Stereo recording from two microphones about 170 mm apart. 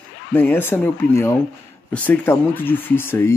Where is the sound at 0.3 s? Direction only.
10° left (ahead or behind).